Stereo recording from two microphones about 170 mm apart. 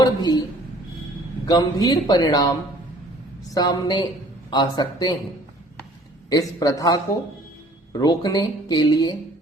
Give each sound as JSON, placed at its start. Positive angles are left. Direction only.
{"t": 0.0, "sound": "a sound", "side_deg": 25}
{"t": 1.5, "sound": "speech", "side_deg": 20}
{"t": 6.3, "sound": "speech", "side_deg": 20}